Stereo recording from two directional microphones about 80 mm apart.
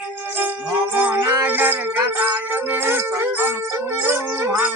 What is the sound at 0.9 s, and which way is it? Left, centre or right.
Music, right.